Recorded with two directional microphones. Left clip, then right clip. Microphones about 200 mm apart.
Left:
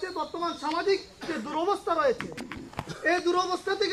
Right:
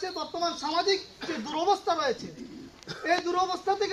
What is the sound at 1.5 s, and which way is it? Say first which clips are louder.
Speech: right 1 dB; 45° right (ahead or behind).